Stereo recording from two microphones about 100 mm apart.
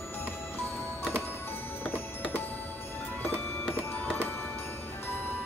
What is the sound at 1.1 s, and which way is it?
Music, 20° left (ahead or behind).